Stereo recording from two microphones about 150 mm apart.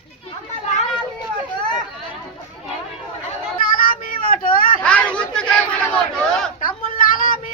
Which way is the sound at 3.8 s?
70° left (ahead or behind).